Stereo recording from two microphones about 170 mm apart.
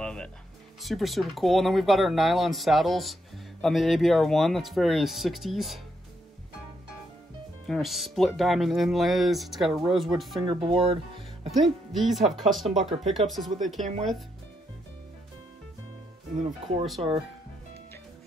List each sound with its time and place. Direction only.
0.0 s music: 5° left (ahead or behind)
0.7 s speech: centre (ahead or behind)
7.6 s speech: centre (ahead or behind)
10.4 s speech: 30° right (ahead or behind)
11.5 s speech: centre (ahead or behind)
16.3 s speech: 50° right (ahead or behind)